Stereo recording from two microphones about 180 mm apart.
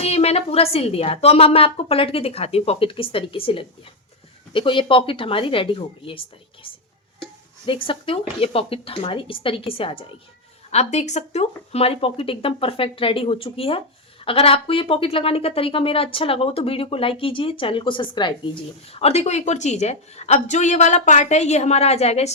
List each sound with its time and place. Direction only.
0.0 s speech: 35° left (ahead or behind)